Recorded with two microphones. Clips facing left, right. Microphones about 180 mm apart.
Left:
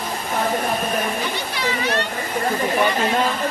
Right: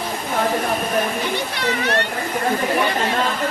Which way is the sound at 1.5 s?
60° right (ahead or behind).